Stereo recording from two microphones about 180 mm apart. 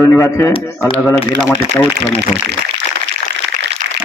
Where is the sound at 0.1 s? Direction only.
20° left (ahead or behind).